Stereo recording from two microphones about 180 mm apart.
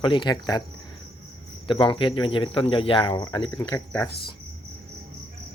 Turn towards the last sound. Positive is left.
turn(degrees=15)  # may be behind; listen again after turning